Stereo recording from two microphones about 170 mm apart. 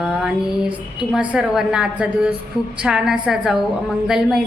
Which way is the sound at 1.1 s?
5° right (ahead or behind).